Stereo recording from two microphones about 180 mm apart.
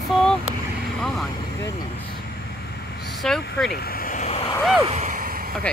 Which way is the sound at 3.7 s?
55° left (ahead or behind).